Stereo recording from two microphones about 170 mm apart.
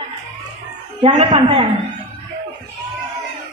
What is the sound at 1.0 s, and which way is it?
Speech, 35° right (ahead or behind).